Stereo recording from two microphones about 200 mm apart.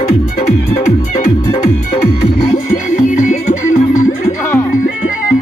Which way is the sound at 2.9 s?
35° left (ahead or behind).